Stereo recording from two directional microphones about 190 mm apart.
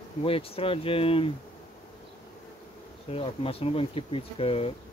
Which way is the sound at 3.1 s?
30° left (ahead or behind).